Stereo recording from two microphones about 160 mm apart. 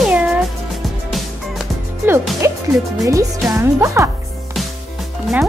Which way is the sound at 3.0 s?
20° right (ahead or behind).